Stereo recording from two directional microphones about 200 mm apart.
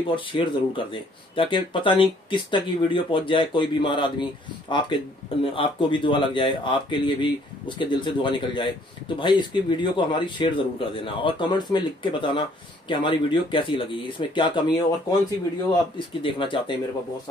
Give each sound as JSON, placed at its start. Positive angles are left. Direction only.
{"t": 0.1, "sound": "speech", "side_deg": 25}